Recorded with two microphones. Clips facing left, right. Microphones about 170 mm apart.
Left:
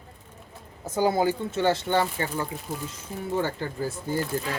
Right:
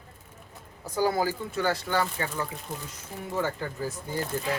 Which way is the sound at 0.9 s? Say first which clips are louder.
Left 3 dB; 25° left (ahead or behind).